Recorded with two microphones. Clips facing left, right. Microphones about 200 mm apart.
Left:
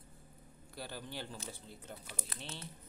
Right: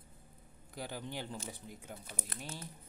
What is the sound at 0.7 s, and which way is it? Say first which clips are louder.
Speech: right 3 dB; 15° right (ahead or behind).